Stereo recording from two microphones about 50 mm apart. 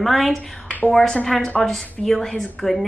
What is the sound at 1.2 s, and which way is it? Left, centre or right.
Speech, centre.